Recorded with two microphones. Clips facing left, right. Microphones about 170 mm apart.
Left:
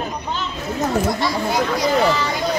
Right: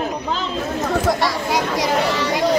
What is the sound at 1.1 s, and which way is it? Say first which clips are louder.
Speech: even; 90° right.